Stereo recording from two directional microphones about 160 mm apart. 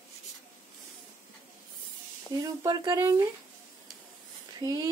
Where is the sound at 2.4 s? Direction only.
25° right (ahead or behind).